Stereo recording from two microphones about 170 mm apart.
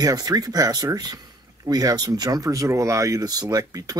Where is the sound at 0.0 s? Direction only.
20° right (ahead or behind).